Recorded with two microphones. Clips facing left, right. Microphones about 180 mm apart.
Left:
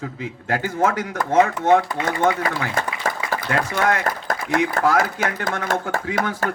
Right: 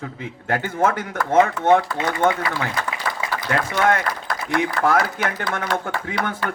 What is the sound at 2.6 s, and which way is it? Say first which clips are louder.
Applause: left 2 dB; 45° left (ahead or behind).